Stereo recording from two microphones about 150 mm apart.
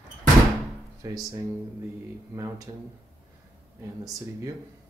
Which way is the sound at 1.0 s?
25° right (ahead or behind).